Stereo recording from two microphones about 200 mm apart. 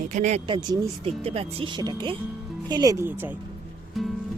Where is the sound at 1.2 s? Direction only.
30° right (ahead or behind); by 3.3 s 10° right (ahead or behind).